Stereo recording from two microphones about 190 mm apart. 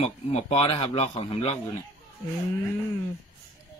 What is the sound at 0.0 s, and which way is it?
Speech, 35° left (ahead or behind).